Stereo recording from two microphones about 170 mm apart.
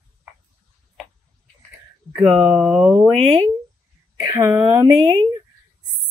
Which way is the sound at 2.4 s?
5° right (ahead or behind).